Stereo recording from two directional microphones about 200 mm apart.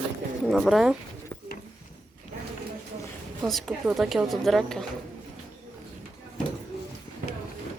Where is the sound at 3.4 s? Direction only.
5° right (ahead or behind).